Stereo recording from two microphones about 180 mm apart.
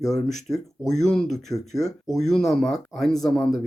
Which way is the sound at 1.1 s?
Centre (ahead or behind).